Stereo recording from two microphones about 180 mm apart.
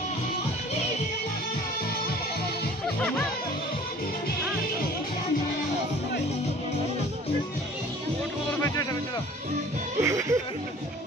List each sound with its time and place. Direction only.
3.0 s music: 5° left (ahead or behind)
8.5 s music: 15° left (ahead or behind)
10.0 s speech: 15° right (ahead or behind)